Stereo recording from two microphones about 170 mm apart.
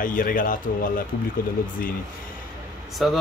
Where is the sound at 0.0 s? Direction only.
55° left (ahead or behind).